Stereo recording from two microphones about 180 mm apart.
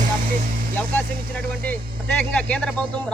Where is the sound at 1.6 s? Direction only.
10° left (ahead or behind).